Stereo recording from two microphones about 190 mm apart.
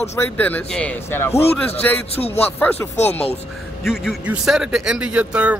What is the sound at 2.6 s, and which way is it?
Speech, 10° left (ahead or behind).